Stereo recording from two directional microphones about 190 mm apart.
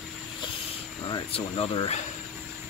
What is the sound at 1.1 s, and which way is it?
Speech, 25° left (ahead or behind).